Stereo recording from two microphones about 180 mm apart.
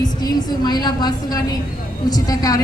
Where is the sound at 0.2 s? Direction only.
20° left (ahead or behind).